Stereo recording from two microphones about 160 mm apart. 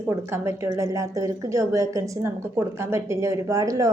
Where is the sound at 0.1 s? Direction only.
15° right (ahead or behind).